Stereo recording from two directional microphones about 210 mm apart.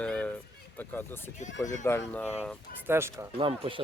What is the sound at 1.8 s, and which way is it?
Speech, 10° left (ahead or behind).